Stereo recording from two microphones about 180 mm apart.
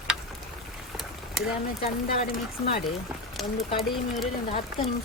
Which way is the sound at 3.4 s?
Centre (ahead or behind).